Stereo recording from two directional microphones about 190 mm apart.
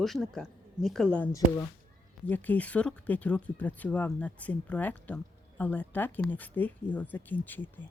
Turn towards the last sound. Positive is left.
turn(degrees=10)  # may be behind; listen again after turning